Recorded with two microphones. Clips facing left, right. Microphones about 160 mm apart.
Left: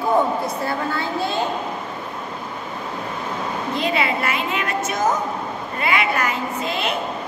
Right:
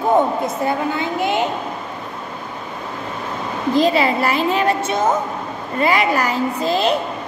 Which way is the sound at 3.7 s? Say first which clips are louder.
Right 7 dB; 35° right (ahead or behind).